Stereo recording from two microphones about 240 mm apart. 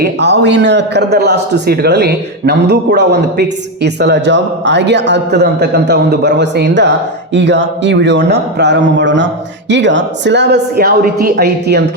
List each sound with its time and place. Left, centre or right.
0.0 s a man's voice: right